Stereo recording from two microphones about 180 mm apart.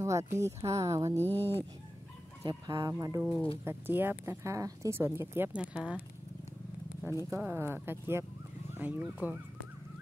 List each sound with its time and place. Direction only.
0.0 s speech: 15° right (ahead or behind)
1.1 s speech: 10° left (ahead or behind)
2.4 s speech: 20° right (ahead or behind)
7.2 s speech: 15° right (ahead or behind)